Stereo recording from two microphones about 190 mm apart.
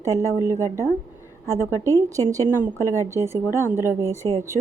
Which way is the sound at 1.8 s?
15° right (ahead or behind).